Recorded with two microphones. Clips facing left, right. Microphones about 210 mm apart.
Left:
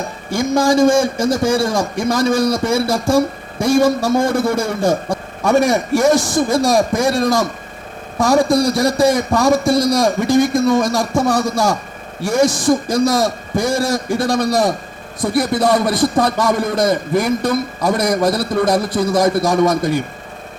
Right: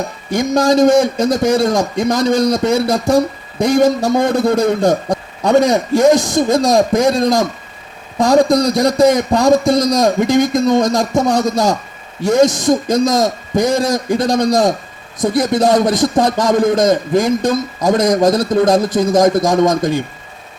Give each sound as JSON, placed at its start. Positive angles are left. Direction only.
{"t": 0.3, "sound": "a man's voice", "side_deg": -20}